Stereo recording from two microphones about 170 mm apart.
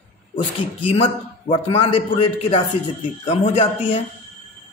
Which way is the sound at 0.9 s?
30° left (ahead or behind).